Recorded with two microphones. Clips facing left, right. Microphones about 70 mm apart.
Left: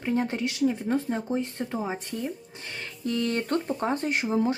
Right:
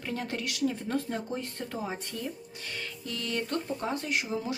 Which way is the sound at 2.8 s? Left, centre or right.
Left.